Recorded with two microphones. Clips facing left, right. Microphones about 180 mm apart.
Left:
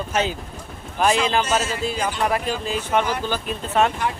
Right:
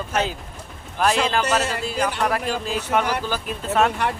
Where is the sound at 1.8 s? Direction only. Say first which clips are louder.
Even; centre (ahead or behind).